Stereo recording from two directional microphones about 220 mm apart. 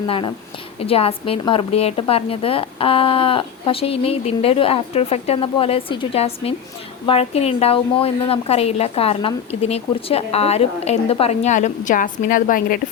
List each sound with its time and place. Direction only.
0.1 s a woman's voice: 25° left (ahead or behind); by 12.8 s 40° left (ahead or behind)